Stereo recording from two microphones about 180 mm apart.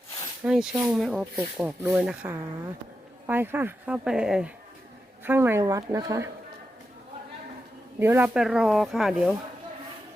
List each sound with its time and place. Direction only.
0.4 s speech: 5° right (ahead or behind)
7.9 s speech: 10° right (ahead or behind)